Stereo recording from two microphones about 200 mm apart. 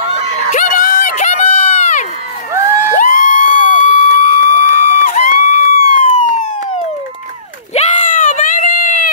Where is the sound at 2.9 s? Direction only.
40° left (ahead or behind).